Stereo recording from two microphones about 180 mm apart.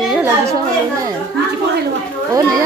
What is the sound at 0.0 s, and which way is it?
Chatter, centre (ahead or behind).